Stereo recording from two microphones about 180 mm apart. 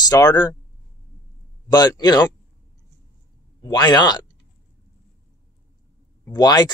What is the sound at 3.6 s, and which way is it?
Speech, 25° left (ahead or behind).